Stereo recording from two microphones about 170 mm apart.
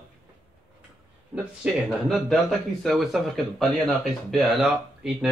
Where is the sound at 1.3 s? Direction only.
Centre (ahead or behind).